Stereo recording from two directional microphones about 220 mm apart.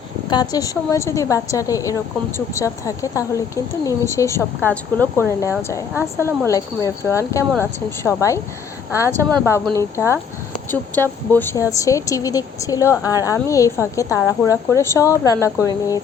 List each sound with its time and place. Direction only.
0.3 s speech: 20° left (ahead or behind)